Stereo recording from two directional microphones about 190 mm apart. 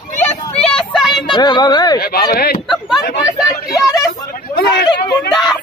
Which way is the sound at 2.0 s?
55° left (ahead or behind).